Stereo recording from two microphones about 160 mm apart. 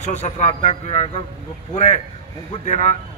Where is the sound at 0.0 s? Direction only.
45° left (ahead or behind).